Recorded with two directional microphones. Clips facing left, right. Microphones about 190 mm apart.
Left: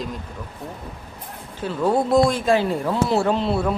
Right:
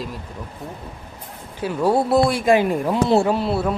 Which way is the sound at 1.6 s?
10° right (ahead or behind).